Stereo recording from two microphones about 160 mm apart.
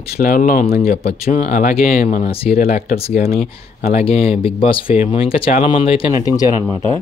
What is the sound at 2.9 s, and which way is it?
Speech, 40° left (ahead or behind).